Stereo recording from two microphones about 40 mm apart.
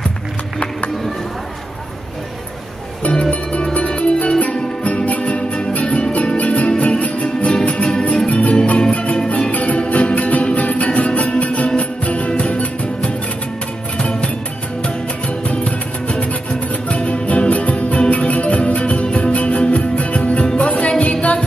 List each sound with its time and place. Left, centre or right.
3.0 s music: left
7.2 s music: centre
15.4 s music: left